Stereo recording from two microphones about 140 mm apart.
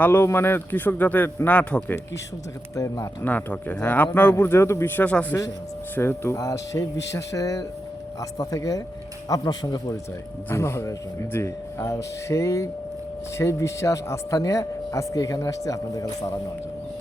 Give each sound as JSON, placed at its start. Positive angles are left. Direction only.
{"t": 0.0, "sound": "speech", "side_deg": 15}
{"t": 2.7, "sound": "speech", "side_deg": 25}
{"t": 3.2, "sound": "speech", "side_deg": 10}
{"t": 10.5, "sound": "speech", "side_deg": 20}